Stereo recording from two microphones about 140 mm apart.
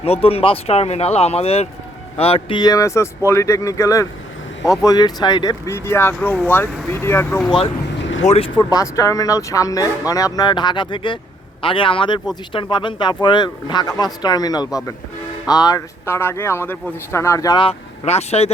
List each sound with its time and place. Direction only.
0.0 s speech: 45° left (ahead or behind)
2.6 s speech: 25° left (ahead or behind)
8.2 s speech: 50° left (ahead or behind)
8.5 s speech: 25° left (ahead or behind)
16.0 s speech: 20° left (ahead or behind)
17.6 s speech: 45° left (ahead or behind)